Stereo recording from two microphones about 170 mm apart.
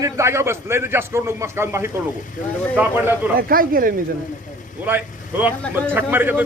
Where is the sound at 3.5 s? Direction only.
55° right (ahead or behind).